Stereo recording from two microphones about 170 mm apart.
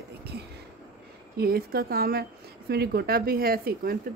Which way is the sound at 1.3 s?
65° right (ahead or behind).